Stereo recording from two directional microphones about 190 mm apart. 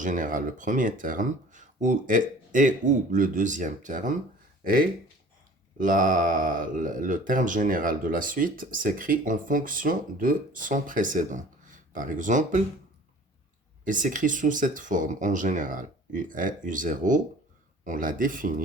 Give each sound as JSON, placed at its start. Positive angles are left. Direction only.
{"t": 0.0, "sound": "speech", "side_deg": -45}
{"t": 13.8, "sound": "speech", "side_deg": -45}